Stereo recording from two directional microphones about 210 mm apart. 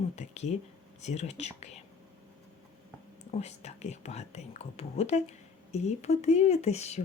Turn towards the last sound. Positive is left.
turn(degrees=30)  # may be behind; listen again after turning